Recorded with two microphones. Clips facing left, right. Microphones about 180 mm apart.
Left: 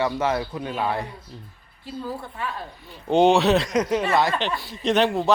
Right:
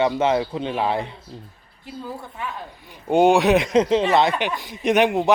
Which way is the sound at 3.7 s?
25° right (ahead or behind).